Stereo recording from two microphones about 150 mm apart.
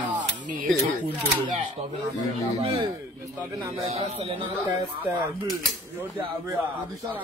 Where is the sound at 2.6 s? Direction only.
40° right (ahead or behind).